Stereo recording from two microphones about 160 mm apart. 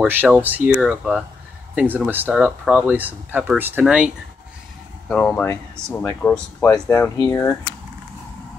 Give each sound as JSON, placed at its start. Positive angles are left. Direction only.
{"t": 0.0, "sound": "speech", "side_deg": -10}
{"t": 5.0, "sound": "speech", "side_deg": 5}